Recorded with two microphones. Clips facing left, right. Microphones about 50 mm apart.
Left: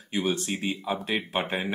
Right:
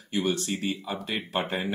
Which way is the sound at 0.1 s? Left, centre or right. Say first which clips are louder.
Even; centre.